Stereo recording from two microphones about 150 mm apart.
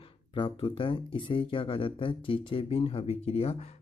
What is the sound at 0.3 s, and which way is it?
Speech, 35° left (ahead or behind).